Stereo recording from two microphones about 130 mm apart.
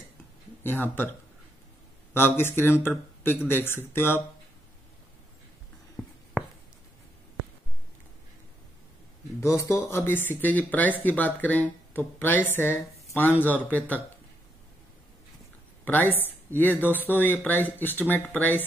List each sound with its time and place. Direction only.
0.7 s speech: 15° left (ahead or behind)
2.1 s speech: 15° left (ahead or behind)
9.4 s speech: 20° left (ahead or behind)
15.8 s speech: 15° left (ahead or behind)